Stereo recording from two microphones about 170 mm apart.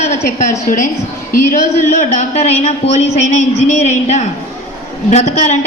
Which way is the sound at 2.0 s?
40° left (ahead or behind).